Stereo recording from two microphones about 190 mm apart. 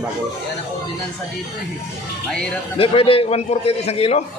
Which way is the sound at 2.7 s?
30° left (ahead or behind).